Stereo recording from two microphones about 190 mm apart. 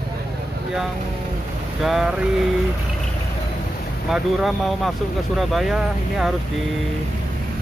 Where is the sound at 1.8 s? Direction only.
Centre (ahead or behind).